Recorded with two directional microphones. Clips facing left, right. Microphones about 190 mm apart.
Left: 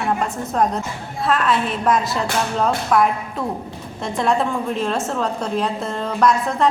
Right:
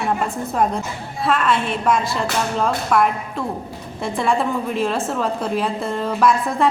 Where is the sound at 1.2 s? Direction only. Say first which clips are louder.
Even; centre (ahead or behind).